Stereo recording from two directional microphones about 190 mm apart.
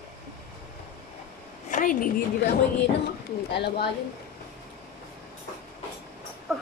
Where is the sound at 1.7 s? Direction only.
45° left (ahead or behind).